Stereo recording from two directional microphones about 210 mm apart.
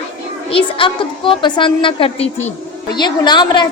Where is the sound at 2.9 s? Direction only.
20° left (ahead or behind).